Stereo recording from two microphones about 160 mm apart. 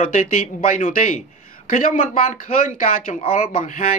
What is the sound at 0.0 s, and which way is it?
Speech, 55° left (ahead or behind).